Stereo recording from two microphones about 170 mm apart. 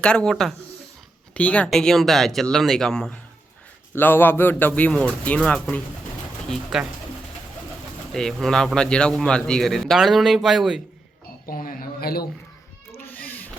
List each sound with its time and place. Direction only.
0.0 s a man's voice: 5° left (ahead or behind)
8.1 s a man's voice: 5° left (ahead or behind)
11.4 s a sound: 55° left (ahead or behind)
13.0 s cat: 10° left (ahead or behind)